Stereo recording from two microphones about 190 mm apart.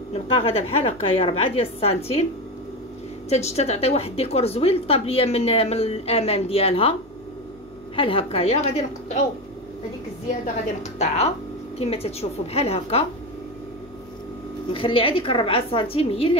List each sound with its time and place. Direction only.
0.3 s a woman's voice: 30° left (ahead or behind)
3.3 s a woman's voice: 35° left (ahead or behind)
10.4 s a woman's voice: 35° left (ahead or behind)
14.7 s a woman's voice: 30° left (ahead or behind)